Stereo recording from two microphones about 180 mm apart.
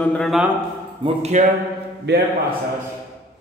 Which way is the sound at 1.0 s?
35° right (ahead or behind).